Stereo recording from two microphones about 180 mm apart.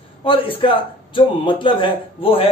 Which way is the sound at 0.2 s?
30° left (ahead or behind).